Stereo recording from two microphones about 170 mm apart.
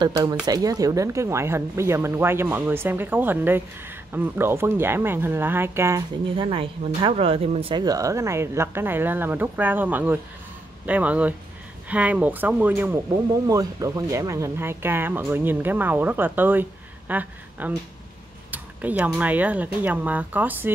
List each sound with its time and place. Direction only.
0.0 s speech: 20° right (ahead or behind)
6.3 s speech: 30° right (ahead or behind); by 20.7 s 10° right (ahead or behind)